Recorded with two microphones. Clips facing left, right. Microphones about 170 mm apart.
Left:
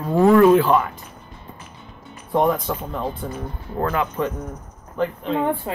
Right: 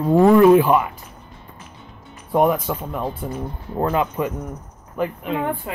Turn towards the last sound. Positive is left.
turn(degrees=-10)  # may be behind; listen again after turning